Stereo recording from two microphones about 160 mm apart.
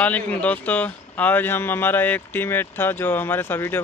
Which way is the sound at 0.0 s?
10° left (ahead or behind).